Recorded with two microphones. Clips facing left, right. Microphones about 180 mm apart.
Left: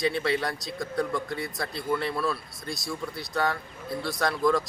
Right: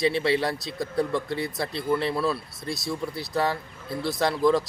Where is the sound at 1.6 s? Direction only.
25° right (ahead or behind).